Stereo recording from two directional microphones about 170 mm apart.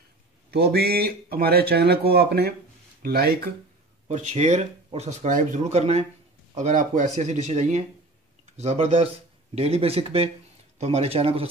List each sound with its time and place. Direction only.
0.5 s speech: 65° right (ahead or behind)
4.1 s speech: 45° right (ahead or behind)